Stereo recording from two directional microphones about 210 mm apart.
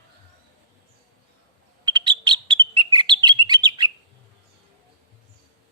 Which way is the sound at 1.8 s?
20° right (ahead or behind).